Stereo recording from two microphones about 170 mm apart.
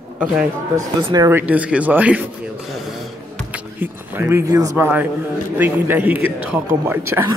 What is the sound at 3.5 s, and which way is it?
Speech, 10° right (ahead or behind).